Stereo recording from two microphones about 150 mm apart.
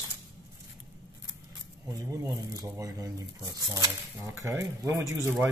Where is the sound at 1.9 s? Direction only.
20° right (ahead or behind).